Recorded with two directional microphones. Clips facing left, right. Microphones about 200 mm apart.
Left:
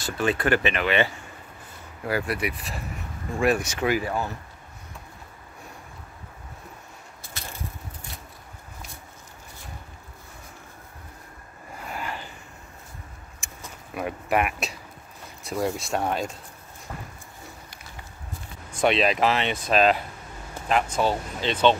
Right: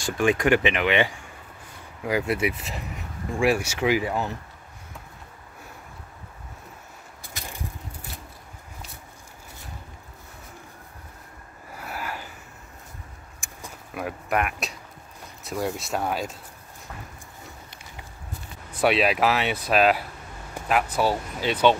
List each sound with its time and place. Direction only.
0.0 s speech: 15° right (ahead or behind)
3.3 s speech: 10° right (ahead or behind)
7.3 s a sound: 15° right (ahead or behind)
11.8 s vehicle: 5° right (ahead or behind)
13.4 s vehicle: centre (ahead or behind)
13.9 s speech: centre (ahead or behind)
18.8 s speech: 5° right (ahead or behind)